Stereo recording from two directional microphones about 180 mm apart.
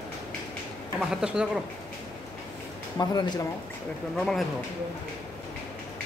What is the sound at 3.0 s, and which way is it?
Speech, 25° left (ahead or behind).